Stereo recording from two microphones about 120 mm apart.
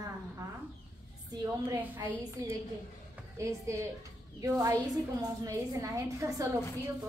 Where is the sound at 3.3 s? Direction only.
25° right (ahead or behind).